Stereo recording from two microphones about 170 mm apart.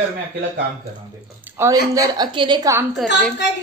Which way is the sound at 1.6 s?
20° right (ahead or behind).